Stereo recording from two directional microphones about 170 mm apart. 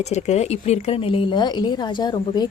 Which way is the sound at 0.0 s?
40° left (ahead or behind).